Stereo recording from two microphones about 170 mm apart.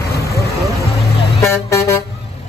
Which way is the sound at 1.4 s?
15° left (ahead or behind).